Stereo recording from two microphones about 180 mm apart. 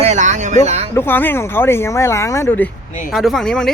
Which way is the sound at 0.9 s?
10° left (ahead or behind).